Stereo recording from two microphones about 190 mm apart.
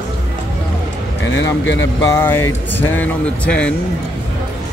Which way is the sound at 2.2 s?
10° left (ahead or behind).